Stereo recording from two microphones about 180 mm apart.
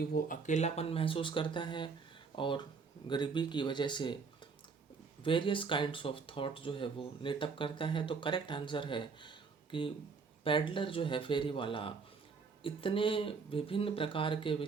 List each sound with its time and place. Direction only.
0.0 s speech: 50° left (ahead or behind); by 4.2 s 25° left (ahead or behind)
5.2 s speech: 30° left (ahead or behind)